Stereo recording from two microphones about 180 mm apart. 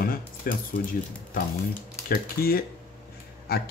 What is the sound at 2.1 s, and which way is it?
Speech, 55° left (ahead or behind).